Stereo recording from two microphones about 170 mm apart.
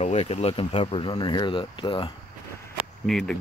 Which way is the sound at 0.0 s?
40° left (ahead or behind).